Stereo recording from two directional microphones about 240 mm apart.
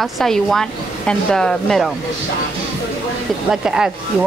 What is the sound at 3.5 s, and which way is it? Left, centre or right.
Speech, centre.